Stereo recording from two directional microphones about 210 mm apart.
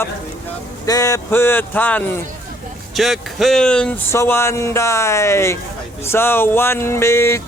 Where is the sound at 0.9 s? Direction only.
15° left (ahead or behind).